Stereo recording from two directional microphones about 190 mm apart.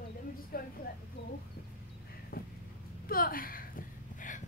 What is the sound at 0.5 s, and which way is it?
Speech, 50° left (ahead or behind).